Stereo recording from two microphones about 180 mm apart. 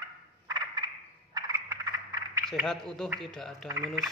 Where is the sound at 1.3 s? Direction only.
20° right (ahead or behind).